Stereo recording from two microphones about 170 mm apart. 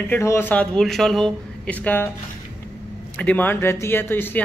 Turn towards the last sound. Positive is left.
turn(degrees=10)  # may be behind; listen again after turning